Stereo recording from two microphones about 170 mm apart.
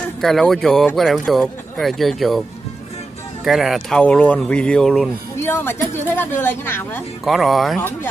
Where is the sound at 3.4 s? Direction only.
Centre (ahead or behind).